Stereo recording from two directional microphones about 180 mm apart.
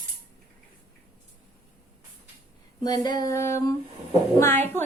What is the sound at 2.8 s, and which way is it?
A woman's voice, 20° left (ahead or behind).